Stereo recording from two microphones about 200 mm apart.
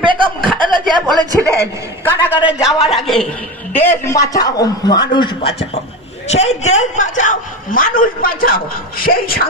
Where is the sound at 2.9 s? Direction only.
Centre (ahead or behind).